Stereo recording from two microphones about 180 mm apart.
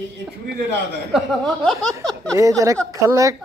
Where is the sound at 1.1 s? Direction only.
Centre (ahead or behind).